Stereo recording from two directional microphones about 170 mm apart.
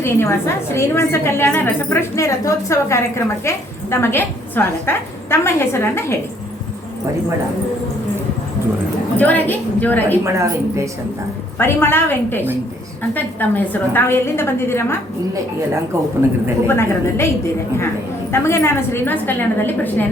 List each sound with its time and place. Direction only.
0.0 s a woman's voice: 15° left (ahead or behind)
9.1 s a woman's voice: 10° left (ahead or behind)
10.2 s a woman's voice: 15° right (ahead or behind)
11.5 s a woman's voice: 15° left (ahead or behind)
16.6 s a woman's voice: 15° left (ahead or behind)
18.3 s a woman's voice: 15° left (ahead or behind)